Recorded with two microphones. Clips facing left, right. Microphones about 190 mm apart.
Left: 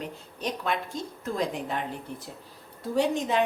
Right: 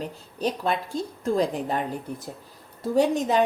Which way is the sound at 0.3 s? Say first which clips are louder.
Right 4 dB; 35° right (ahead or behind).